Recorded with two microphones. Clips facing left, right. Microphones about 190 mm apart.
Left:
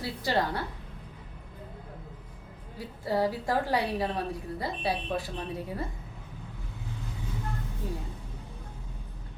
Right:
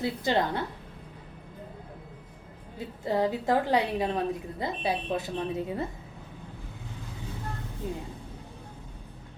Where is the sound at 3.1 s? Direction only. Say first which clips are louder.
Right 2 dB; 20° right (ahead or behind).